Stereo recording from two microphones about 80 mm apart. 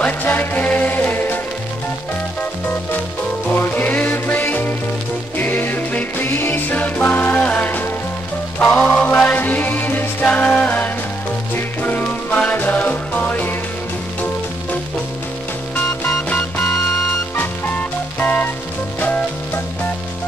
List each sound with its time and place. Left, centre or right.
0.0 s music: left
3.4 s music: left
15.7 s music: centre
18.2 s music: left
18.9 s sizzle: centre